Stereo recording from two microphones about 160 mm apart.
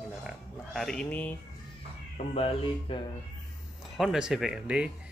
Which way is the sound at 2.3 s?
35° left (ahead or behind).